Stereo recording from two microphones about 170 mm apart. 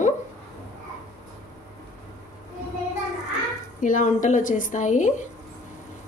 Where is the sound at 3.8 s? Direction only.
50° left (ahead or behind).